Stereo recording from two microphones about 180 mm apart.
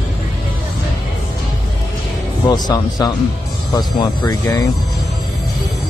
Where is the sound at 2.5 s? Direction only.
20° left (ahead or behind).